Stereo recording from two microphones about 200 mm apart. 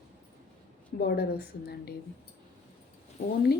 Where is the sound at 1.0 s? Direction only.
55° left (ahead or behind).